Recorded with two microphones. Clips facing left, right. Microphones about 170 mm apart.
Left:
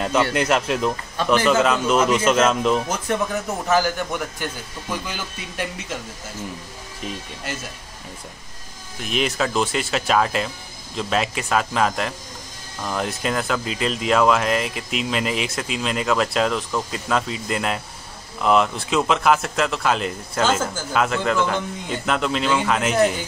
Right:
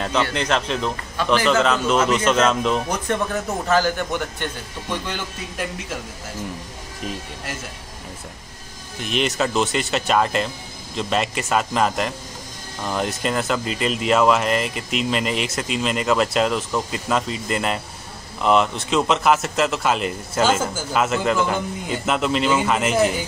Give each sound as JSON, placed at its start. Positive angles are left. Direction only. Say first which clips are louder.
{"t": 0.0, "sound": "speech", "louder": "left 2 dB", "side_deg": 5}
{"t": 3.6, "sound": "speech", "louder": "even", "side_deg": 15}
{"t": 4.1, "sound": "speech", "louder": "right 1 dB", "side_deg": 5}
{"t": 9.0, "sound": "speech", "louder": "right 1 dB", "side_deg": 0}